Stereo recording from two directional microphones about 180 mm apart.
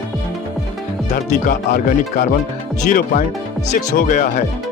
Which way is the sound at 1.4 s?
45° left (ahead or behind).